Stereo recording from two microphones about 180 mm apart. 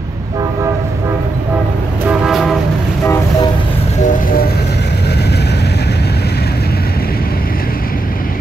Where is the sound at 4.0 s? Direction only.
45° left (ahead or behind).